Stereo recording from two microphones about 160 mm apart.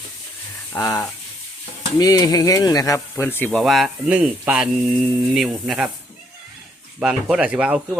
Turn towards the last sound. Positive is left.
turn(degrees=-5)  # may be behind; listen again after turning